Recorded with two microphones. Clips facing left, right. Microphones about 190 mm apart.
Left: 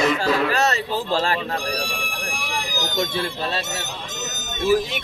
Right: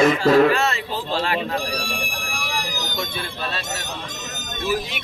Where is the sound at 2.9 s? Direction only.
40° left (ahead or behind).